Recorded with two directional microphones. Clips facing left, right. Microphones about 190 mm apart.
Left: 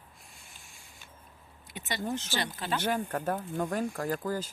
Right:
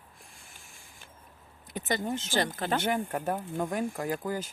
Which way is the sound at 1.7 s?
45° right (ahead or behind).